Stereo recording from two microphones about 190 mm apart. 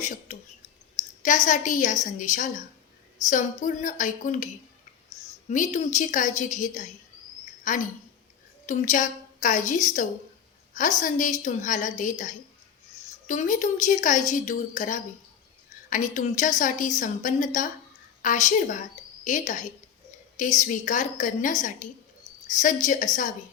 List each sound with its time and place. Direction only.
0.0 s speech: 40° left (ahead or behind)
1.5 s speech: 45° left (ahead or behind)
5.5 s a woman's voice: 40° left (ahead or behind)